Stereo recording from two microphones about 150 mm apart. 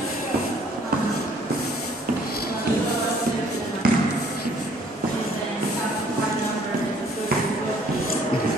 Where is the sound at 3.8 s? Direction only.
75° right (ahead or behind).